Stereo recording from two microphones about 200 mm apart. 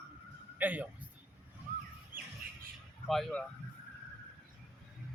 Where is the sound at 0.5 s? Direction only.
10° right (ahead or behind).